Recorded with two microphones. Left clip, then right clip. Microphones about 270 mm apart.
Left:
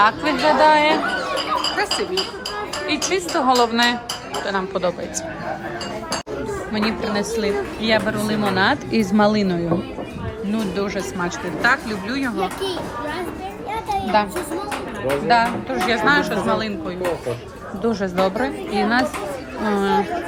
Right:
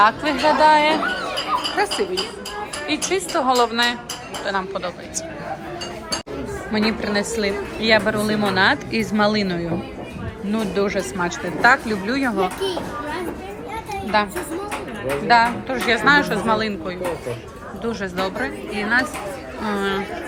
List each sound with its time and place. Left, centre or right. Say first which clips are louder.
0.0 s a woman's voice: even; centre
1.7 s a woman's voice: even; centre
6.7 s a woman's voice: right 2 dB; centre
13.9 s a sound: left 1 dB; centre
15.0 s a woman's voice: right 1 dB; centre